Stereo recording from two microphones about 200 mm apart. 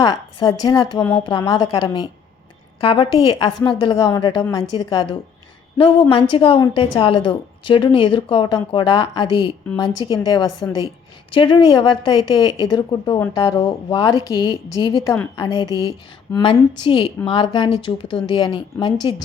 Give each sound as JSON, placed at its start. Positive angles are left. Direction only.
{"t": 0.0, "sound": "a woman's voice", "side_deg": 20}